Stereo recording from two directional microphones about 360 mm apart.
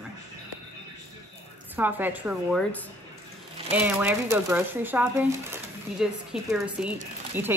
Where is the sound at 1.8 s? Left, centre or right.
Centre.